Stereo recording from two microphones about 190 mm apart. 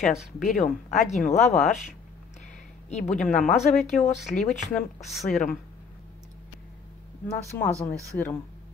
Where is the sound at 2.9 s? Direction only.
35° left (ahead or behind).